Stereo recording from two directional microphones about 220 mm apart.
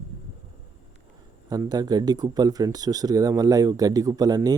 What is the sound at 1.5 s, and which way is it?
Speech, 15° right (ahead or behind).